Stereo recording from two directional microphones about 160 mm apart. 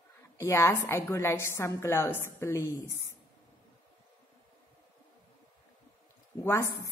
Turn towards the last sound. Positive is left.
turn(degrees=15)  # may be behind; listen again after turning